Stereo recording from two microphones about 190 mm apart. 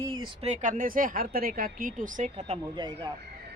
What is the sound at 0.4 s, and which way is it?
Speech, 40° right (ahead or behind).